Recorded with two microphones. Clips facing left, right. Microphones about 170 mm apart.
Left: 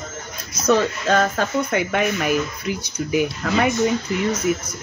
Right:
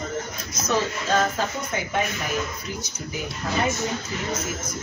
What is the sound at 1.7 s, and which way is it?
Speech, 70° left (ahead or behind).